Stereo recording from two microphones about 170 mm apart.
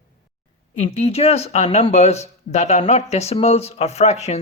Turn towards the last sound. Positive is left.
turn(degrees=40)  # may be behind; listen again after turning